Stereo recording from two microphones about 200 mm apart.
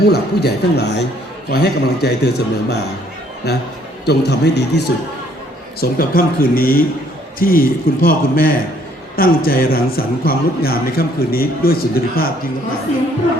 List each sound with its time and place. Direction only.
0.1 s a man's voice: 55° left (ahead or behind)
5.8 s a man's voice: 45° left (ahead or behind)